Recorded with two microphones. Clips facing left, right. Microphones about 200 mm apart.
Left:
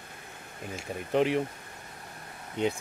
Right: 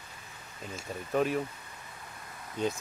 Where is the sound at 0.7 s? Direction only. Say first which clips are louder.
Left 3 dB; 20° left (ahead or behind).